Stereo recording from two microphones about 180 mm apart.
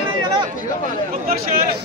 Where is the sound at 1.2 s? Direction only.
55° right (ahead or behind).